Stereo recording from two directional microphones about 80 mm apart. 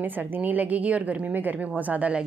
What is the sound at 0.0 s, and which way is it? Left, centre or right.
A woman's voice, right.